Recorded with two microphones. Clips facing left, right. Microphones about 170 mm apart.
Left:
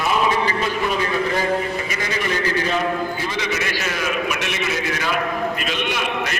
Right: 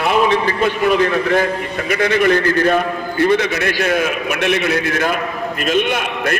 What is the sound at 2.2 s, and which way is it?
A man's voice, 55° right (ahead or behind).